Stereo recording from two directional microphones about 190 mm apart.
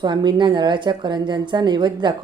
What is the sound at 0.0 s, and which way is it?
A woman's voice, 25° right (ahead or behind).